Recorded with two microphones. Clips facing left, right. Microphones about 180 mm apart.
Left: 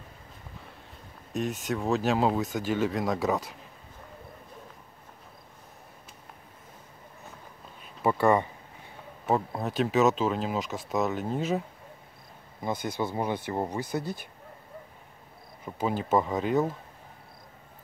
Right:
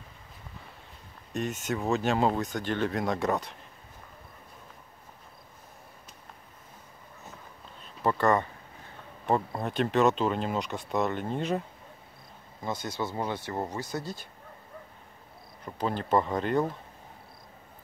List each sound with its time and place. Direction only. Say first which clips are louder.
1.3 s speech: left 1 dB; centre (ahead or behind)
7.8 s a sound: left 2 dB; 10° left (ahead or behind)
9.2 s speech: even; centre (ahead or behind)
12.6 s speech: left 3 dB; 10° left (ahead or behind)
14.0 s speech: left 3 dB; 55° left (ahead or behind)
15.6 s speech: left 2 dB; 5° left (ahead or behind)